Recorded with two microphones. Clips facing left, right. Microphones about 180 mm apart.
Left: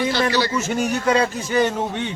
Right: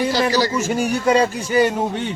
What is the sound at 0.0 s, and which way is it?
Speech, 40° right (ahead or behind).